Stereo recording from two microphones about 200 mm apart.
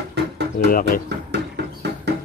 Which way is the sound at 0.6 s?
45° left (ahead or behind).